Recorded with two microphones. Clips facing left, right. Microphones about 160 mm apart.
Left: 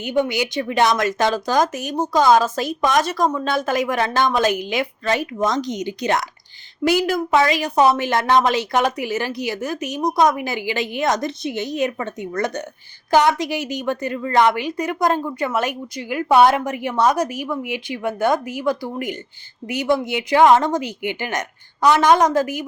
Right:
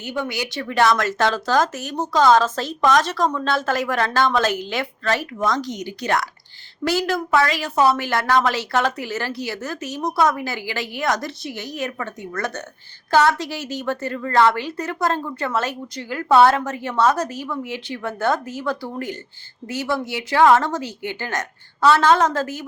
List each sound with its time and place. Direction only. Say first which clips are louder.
0.0 s a woman's voice: left 6 dB; 15° left (ahead or behind)